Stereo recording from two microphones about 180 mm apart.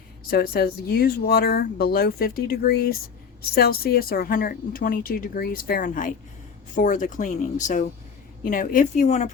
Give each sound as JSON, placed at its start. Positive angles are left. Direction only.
{"t": 0.3, "sound": "speech", "side_deg": 60}